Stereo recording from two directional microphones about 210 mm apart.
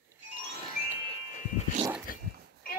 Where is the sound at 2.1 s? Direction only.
40° left (ahead or behind).